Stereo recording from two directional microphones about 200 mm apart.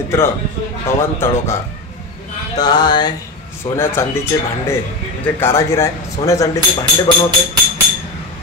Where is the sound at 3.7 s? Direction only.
10° left (ahead or behind).